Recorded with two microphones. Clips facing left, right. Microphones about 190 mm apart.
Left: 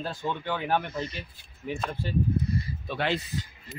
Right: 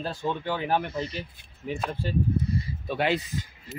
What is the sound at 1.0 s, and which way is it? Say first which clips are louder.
Speech: right 2 dB; 35° right (ahead or behind).